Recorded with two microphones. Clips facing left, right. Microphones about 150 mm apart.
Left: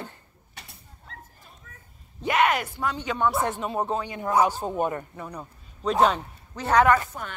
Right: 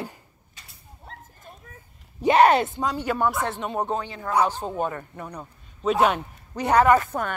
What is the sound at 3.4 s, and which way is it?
Speech, 10° left (ahead or behind).